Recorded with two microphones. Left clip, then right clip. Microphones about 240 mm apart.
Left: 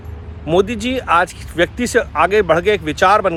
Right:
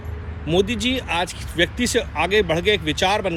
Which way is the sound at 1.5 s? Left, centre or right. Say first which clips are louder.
Left 4 dB; left.